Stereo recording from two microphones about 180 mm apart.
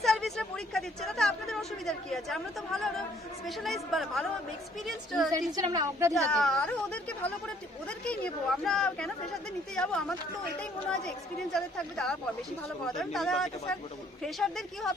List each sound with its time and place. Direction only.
0.0 s a woman's voice: centre (ahead or behind)
5.5 s a woman's voice: 20° right (ahead or behind)
6.3 s a woman's voice: 5° left (ahead or behind)